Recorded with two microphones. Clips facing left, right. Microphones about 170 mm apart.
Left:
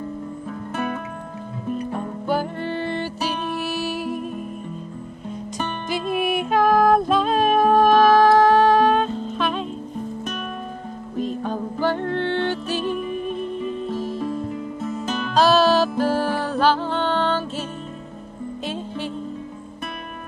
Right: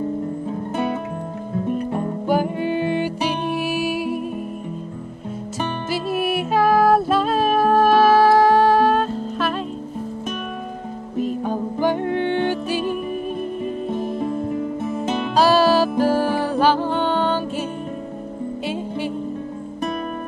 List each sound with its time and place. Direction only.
0.5 s music: 25° right (ahead or behind)
2.0 s music: 10° right (ahead or behind)
5.6 s music: 5° right (ahead or behind)
11.1 s music: 10° right (ahead or behind)
13.1 s music: 50° right (ahead or behind)
15.3 s music: 10° right (ahead or behind)